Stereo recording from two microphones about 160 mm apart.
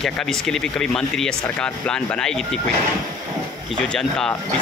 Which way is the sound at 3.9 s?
5° left (ahead or behind).